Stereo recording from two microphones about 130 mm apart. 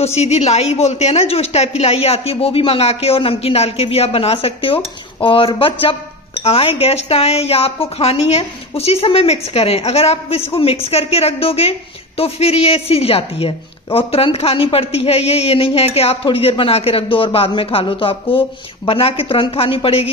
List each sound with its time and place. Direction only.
0.0 s a woman's voice: 55° left (ahead or behind)